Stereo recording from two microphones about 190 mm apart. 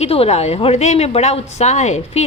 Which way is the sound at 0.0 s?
30° left (ahead or behind).